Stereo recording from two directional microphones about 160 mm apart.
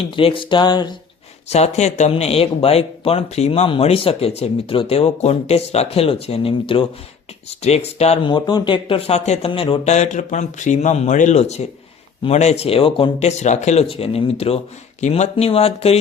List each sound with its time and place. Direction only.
0.0 s speech: 35° left (ahead or behind)
1.5 s speech: 40° left (ahead or behind)
8.3 s speech: 25° left (ahead or behind); by 9.5 s 45° left (ahead or behind)
9.5 s speech: 30° left (ahead or behind)
9.8 s speech: 45° left (ahead or behind)